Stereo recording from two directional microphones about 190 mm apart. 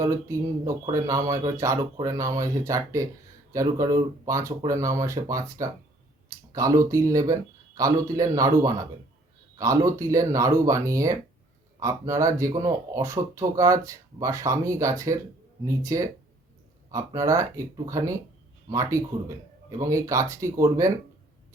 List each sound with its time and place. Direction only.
0.0 s speech: 15° right (ahead or behind)